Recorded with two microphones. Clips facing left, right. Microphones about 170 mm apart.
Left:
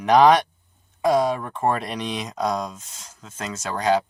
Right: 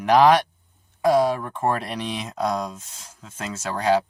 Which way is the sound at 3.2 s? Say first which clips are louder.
Even; 10° right (ahead or behind).